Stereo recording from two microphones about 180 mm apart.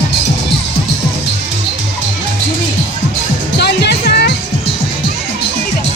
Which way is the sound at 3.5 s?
70° left (ahead or behind).